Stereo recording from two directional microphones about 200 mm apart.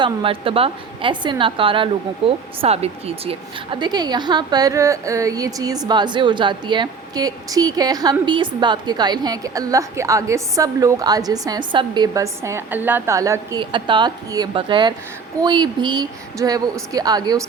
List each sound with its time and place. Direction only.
0.0 s a woman's voice: 25° right (ahead or behind)